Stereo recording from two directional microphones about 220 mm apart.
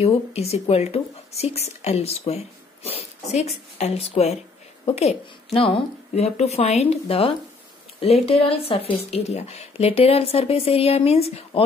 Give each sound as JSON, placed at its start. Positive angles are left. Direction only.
{"t": 0.0, "sound": "speech", "side_deg": 30}